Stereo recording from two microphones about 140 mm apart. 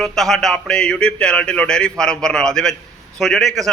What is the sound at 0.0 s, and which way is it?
A man's voice, 5° left (ahead or behind).